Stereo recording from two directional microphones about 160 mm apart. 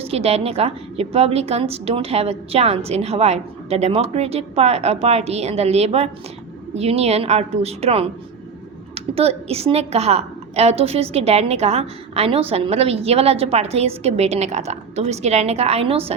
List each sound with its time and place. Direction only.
0.0 s a woman's voice: 40° right (ahead or behind)